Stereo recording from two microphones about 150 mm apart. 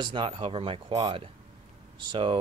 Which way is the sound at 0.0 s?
35° right (ahead or behind).